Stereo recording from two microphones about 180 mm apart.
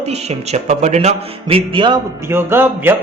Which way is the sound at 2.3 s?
10° right (ahead or behind).